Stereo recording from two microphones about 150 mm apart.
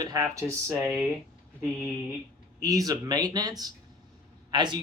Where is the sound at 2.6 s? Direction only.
25° right (ahead or behind).